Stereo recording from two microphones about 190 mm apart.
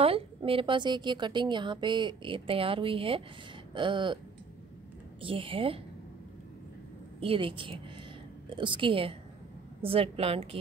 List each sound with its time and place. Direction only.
0.0 s a woman's voice: 30° right (ahead or behind)
5.2 s a woman's voice: 30° right (ahead or behind)
7.2 s a woman's voice: 30° right (ahead or behind)